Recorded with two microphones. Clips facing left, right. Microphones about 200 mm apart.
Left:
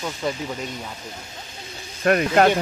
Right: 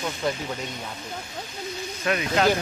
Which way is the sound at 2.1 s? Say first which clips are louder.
Left 5 dB; 50° left (ahead or behind).